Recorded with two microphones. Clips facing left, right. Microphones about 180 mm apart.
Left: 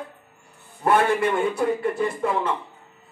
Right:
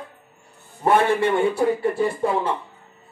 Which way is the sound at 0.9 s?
25° right (ahead or behind).